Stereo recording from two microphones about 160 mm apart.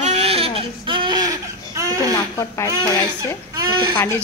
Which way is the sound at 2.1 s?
20° left (ahead or behind).